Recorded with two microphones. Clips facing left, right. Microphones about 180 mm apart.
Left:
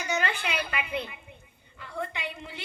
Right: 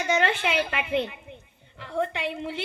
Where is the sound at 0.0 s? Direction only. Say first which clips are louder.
Right 6 dB; 80° right.